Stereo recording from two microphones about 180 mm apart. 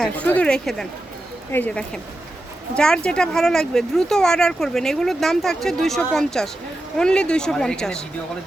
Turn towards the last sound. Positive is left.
turn(degrees=5)  # may be behind; listen again after turning